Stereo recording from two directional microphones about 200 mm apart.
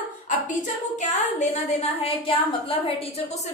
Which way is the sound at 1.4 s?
30° left (ahead or behind).